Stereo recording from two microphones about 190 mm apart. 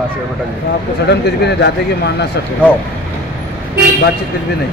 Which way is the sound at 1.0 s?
60° left (ahead or behind).